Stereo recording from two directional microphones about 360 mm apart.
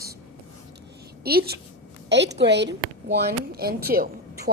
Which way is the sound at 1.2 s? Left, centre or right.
Right.